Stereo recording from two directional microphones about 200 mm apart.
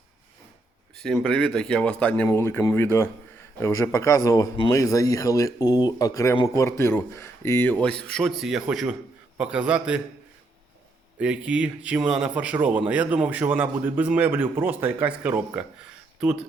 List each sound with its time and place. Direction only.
0.9 s speech: centre (ahead or behind)
11.2 s a man's voice: 5° right (ahead or behind)